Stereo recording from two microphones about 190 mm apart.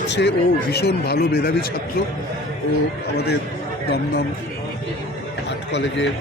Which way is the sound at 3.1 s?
60° left (ahead or behind).